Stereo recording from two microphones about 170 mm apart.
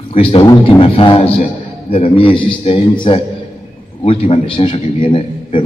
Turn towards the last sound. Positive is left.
turn(degrees=30)  # may be behind; listen again after turning